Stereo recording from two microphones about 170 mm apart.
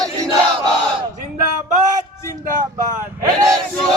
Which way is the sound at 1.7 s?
45° right (ahead or behind).